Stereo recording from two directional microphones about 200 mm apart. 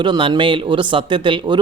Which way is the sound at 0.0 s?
25° right (ahead or behind).